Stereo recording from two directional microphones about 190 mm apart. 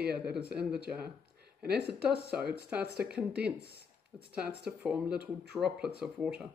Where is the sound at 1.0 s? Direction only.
55° right (ahead or behind).